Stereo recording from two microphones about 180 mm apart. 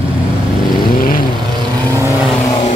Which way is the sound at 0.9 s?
50° left (ahead or behind).